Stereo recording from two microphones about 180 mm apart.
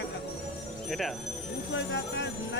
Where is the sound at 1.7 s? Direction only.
85° left.